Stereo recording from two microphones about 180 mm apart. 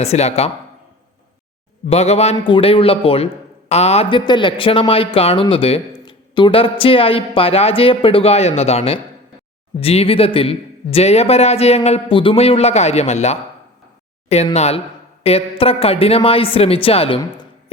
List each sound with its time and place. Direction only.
0.0 s a man's voice: 35° left (ahead or behind)
1.9 s a man's voice: 35° left (ahead or behind)
14.5 s a man's voice: 35° left (ahead or behind)